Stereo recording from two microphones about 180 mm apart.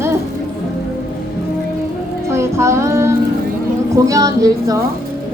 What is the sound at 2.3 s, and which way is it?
Music, 15° right (ahead or behind).